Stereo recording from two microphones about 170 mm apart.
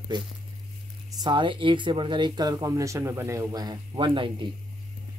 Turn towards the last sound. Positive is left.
turn(degrees=-30)  # may be behind; listen again after turning